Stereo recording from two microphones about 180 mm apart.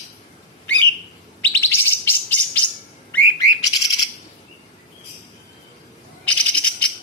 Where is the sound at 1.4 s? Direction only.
10° left (ahead or behind).